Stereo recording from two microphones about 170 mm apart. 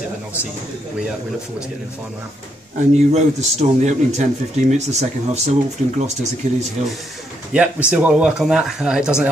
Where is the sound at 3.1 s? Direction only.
40° right (ahead or behind).